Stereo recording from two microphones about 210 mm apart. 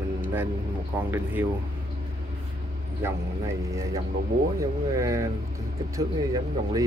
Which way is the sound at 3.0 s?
10° right (ahead or behind).